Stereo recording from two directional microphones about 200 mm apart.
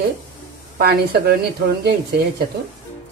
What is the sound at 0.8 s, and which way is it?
Speech, 50° right (ahead or behind).